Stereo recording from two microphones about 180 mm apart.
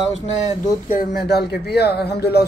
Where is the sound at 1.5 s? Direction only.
65° left (ahead or behind).